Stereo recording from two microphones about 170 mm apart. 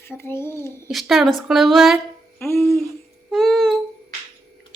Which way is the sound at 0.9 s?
Centre (ahead or behind).